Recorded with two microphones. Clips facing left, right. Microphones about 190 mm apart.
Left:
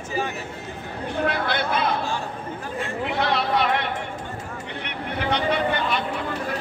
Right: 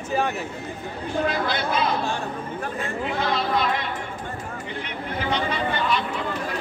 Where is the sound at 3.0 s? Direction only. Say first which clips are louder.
Left 1 dB; 70° left (ahead or behind).